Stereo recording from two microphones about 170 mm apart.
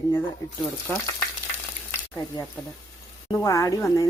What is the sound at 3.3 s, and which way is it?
Speech, 20° left (ahead or behind).